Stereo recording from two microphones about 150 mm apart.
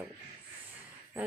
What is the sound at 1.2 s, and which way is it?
Speech, 10° right (ahead or behind).